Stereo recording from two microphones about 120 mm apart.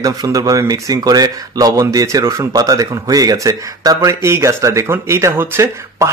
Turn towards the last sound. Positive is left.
turn(degrees=-20)  # may be behind; listen again after turning